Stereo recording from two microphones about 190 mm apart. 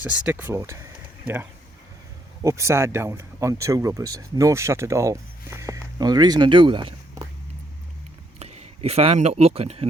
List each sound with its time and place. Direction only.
0.0 s speech: 5° right (ahead or behind)
2.4 s speech: 15° right (ahead or behind)
8.4 s speech: 35° right (ahead or behind)